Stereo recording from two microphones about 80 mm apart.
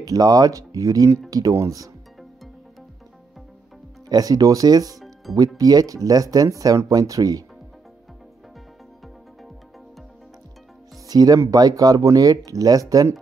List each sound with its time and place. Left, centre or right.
0.0 s speech: right
4.1 s speech: right
5.3 s speech: centre
5.6 s speech: right
11.1 s speech: right